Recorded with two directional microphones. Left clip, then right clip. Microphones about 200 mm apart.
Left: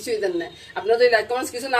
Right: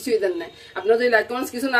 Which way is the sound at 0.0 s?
20° right (ahead or behind).